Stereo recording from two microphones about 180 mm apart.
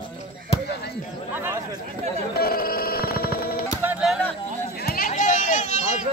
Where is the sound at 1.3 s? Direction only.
10° right (ahead or behind).